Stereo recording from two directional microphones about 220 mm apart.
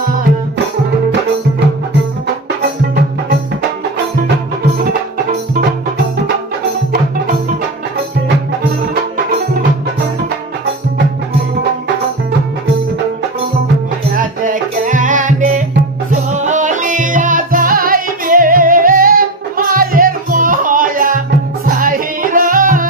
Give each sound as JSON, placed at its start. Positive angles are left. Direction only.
{"t": 14.2, "sound": "music", "side_deg": -35}